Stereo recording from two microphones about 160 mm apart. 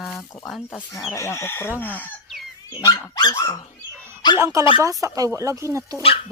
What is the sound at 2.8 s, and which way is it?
Speech, 20° left (ahead or behind).